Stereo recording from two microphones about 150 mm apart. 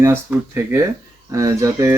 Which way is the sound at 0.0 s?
15° right (ahead or behind).